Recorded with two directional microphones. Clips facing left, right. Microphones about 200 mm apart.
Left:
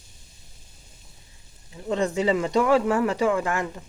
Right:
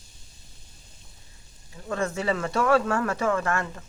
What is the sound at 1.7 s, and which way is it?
Speech, 20° left (ahead or behind).